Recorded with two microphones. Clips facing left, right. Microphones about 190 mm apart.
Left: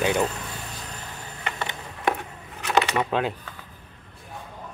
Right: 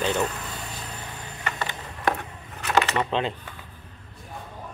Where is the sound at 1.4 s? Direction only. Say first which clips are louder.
Even; 20° left (ahead or behind).